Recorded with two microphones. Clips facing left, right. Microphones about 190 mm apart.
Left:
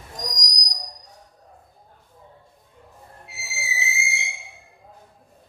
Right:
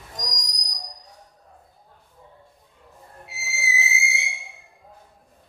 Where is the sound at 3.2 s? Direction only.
Centre (ahead or behind).